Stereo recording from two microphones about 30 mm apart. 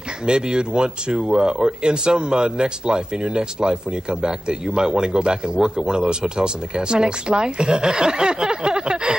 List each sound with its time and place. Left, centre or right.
0.3 s speech: right